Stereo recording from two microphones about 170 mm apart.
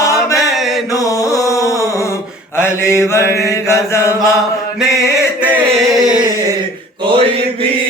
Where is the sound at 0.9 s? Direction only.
20° left (ahead or behind).